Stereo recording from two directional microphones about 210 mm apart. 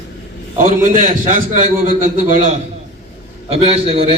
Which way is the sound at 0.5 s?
40° right (ahead or behind).